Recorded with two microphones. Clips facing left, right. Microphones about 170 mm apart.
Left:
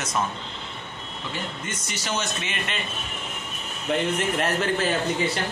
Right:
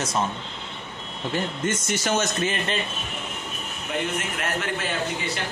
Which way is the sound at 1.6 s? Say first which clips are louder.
Right 8 dB; 50° right (ahead or behind).